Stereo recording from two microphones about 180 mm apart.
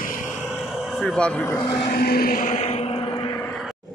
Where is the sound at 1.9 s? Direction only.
55° left (ahead or behind); by 3.3 s 30° left (ahead or behind).